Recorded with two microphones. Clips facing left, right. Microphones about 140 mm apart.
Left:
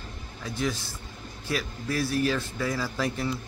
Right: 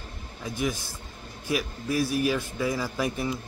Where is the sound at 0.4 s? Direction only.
15° right (ahead or behind).